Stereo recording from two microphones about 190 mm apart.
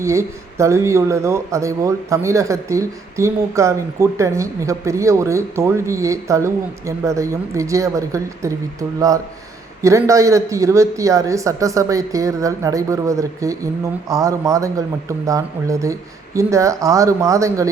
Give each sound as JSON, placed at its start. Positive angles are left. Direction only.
{"t": 0.0, "sound": "speech", "side_deg": -15}
{"t": 9.8, "sound": "speech", "side_deg": -15}